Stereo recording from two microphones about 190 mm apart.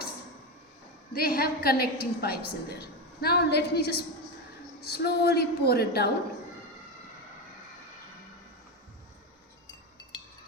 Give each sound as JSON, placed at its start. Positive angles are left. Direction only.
{"t": 1.1, "sound": "a woman's voice", "side_deg": 55}